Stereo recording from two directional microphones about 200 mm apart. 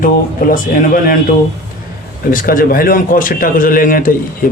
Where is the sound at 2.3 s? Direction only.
45° left (ahead or behind).